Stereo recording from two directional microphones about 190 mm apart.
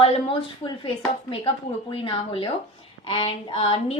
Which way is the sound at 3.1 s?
30° left (ahead or behind).